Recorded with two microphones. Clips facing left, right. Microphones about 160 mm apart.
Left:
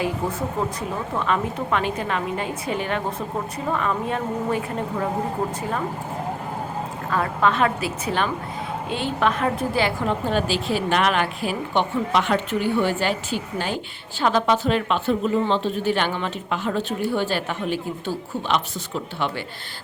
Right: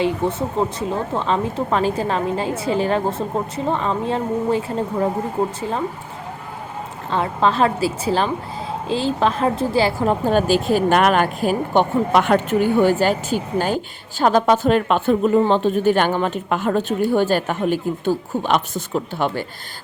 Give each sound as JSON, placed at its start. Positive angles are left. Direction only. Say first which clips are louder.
{"t": 0.0, "sound": "speech", "louder": "right 5 dB", "side_deg": -25}
{"t": 7.1, "sound": "speech", "louder": "right 3 dB", "side_deg": -30}